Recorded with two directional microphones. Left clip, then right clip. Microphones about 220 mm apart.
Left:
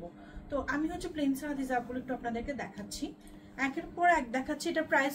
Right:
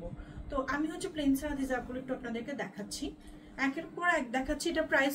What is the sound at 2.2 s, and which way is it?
A woman's voice, 10° right (ahead or behind).